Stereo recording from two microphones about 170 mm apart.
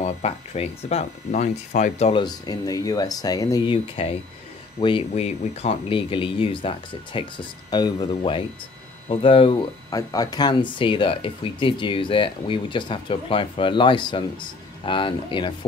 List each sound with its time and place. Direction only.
0.0 s speech: 40° left (ahead or behind)
2.2 s speech: 20° left (ahead or behind)